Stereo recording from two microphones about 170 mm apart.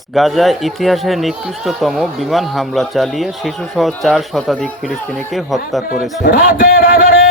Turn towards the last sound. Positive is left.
turn(degrees=60)  # may be behind; listen again after turning